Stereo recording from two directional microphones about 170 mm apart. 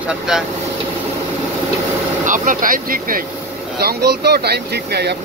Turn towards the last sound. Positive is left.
turn(degrees=-75)  # may be behind; listen again after turning